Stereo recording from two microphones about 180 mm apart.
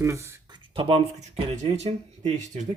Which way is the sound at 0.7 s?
30° right (ahead or behind).